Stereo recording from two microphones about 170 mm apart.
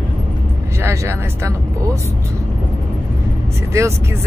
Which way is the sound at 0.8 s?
15° right (ahead or behind).